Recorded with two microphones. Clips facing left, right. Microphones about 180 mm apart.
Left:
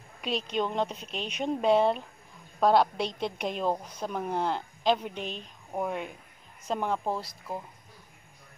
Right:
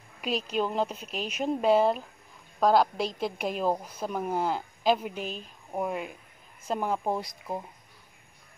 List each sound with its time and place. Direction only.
0.2 s a woman's voice: 5° right (ahead or behind)
7.1 s speech: 15° right (ahead or behind)